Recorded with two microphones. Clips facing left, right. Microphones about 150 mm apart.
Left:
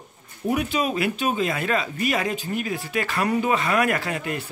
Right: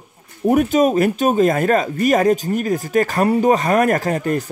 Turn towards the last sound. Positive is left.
turn(degrees=-40)  # may be behind; listen again after turning